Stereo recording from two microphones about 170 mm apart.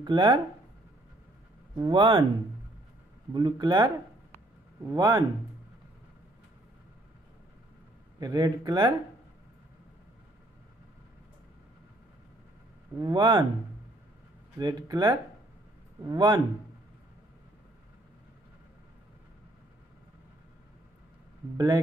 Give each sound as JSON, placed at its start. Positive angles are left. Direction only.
{"t": 0.0, "sound": "speech", "side_deg": -25}
{"t": 1.8, "sound": "speech", "side_deg": -30}
{"t": 3.3, "sound": "speech", "side_deg": -25}
{"t": 8.2, "sound": "speech", "side_deg": -25}
{"t": 13.0, "sound": "speech", "side_deg": -25}
{"t": 14.6, "sound": "speech", "side_deg": -25}